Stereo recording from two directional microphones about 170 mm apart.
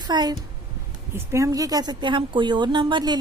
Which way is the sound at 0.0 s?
25° right (ahead or behind).